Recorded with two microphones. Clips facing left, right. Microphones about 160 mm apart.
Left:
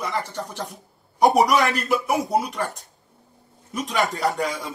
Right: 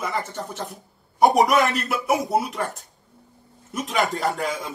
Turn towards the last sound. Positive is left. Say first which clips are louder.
# left 1 dB
turn(degrees=0)  # may be behind; listen again after turning